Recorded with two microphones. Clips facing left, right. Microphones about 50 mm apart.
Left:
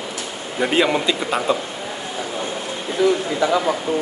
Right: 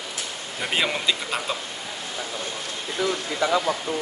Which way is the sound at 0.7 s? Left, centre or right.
Centre.